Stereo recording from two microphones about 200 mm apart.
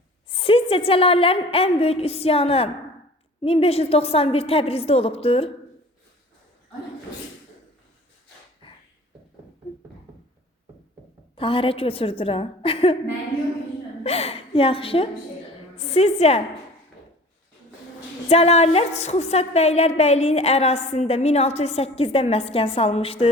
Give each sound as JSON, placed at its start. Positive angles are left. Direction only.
{"t": 0.3, "sound": "a woman's voice", "side_deg": 25}
{"t": 8.6, "sound": "a sound", "side_deg": 25}
{"t": 11.3, "sound": "a woman's voice", "side_deg": 25}
{"t": 14.0, "sound": "a woman's voice", "side_deg": 30}
{"t": 18.3, "sound": "a woman's voice", "side_deg": 30}